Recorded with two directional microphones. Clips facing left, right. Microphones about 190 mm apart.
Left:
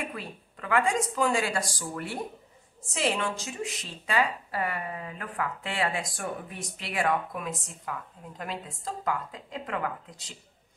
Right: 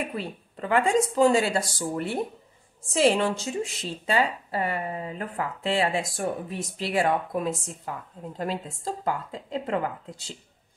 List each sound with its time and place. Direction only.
0.1 s a woman's voice: 25° right (ahead or behind)